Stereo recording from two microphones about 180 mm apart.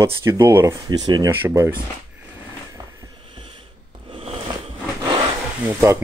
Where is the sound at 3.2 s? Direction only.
30° right (ahead or behind).